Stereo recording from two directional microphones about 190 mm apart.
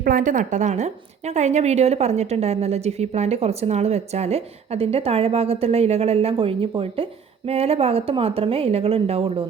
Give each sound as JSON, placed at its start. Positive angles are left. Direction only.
{"t": 0.0, "sound": "a woman's voice", "side_deg": -45}